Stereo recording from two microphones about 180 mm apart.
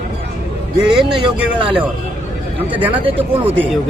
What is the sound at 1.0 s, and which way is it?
Speech, 5° right (ahead or behind).